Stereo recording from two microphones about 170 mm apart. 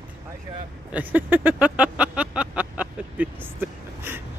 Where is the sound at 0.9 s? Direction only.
10° right (ahead or behind).